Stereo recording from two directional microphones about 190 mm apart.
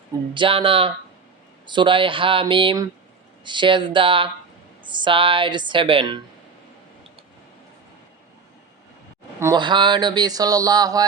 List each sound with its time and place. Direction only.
0.3 s speech: 25° right (ahead or behind)
9.4 s speech: 20° right (ahead or behind)